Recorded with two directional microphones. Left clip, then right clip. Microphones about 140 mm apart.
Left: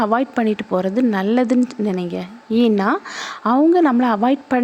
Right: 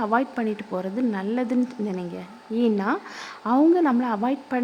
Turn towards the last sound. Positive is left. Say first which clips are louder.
# left 8 dB
turn(degrees=35)  # may be behind; listen again after turning